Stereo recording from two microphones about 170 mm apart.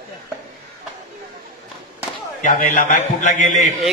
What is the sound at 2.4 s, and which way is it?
A man's voice, 50° left (ahead or behind).